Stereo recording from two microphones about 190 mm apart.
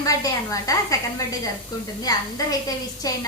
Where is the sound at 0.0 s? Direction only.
20° left (ahead or behind).